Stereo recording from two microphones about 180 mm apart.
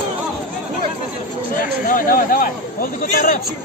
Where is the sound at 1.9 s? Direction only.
50° left (ahead or behind).